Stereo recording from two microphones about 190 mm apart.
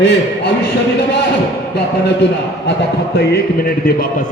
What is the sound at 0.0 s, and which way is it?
Speech, 60° left (ahead or behind).